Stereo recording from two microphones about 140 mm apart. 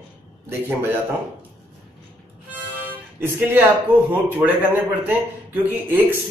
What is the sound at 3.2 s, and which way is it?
A man's voice, 15° right (ahead or behind).